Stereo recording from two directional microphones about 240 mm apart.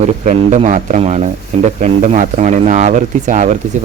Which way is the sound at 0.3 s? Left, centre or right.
Right.